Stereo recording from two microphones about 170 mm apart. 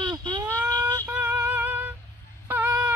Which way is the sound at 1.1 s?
10° right (ahead or behind).